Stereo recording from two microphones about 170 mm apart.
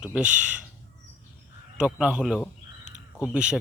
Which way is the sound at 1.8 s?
5° right (ahead or behind).